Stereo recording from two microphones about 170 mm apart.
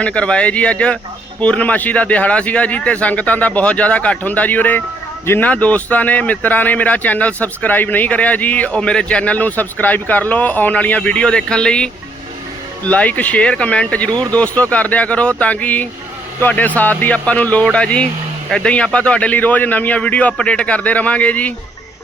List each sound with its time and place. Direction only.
0.0 s speech: 5° left (ahead or behind)